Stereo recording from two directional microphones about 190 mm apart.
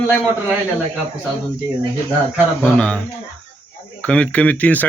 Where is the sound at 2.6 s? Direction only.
5° left (ahead or behind).